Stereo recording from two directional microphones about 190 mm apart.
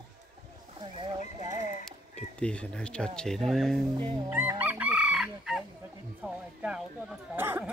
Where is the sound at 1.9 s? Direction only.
5° left (ahead or behind).